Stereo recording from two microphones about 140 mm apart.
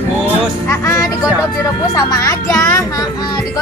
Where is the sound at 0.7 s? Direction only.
20° left (ahead or behind).